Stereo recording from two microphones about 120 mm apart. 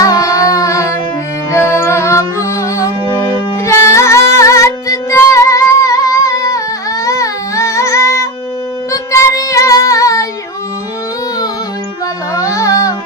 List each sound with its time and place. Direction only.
0.0 s music: 30° left (ahead or behind)
8.9 s child singing: 25° left (ahead or behind)
12.3 s music: 25° left (ahead or behind)